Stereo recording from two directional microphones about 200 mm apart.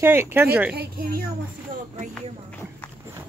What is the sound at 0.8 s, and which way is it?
Speech, 45° right (ahead or behind).